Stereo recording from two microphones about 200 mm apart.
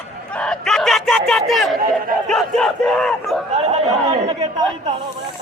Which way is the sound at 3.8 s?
30° right (ahead or behind).